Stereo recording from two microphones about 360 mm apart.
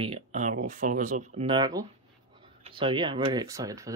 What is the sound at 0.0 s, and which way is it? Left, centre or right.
Speech, centre.